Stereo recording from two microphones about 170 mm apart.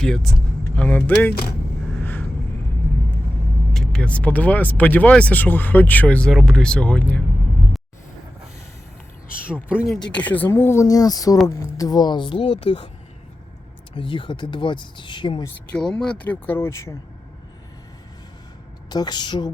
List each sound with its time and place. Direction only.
0.0 s speech: 5° left (ahead or behind)
3.7 s speech: 5° left (ahead or behind)
10.1 s speech: 10° left (ahead or behind); by 12.9 s 30° left (ahead or behind)
13.9 s speech: 30° left (ahead or behind)
15.8 s speech: 5° left (ahead or behind)
18.9 s speech: 25° left (ahead or behind)